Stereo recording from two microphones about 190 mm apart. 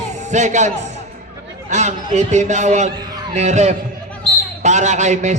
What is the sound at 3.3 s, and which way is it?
A man's voice, 35° right (ahead or behind).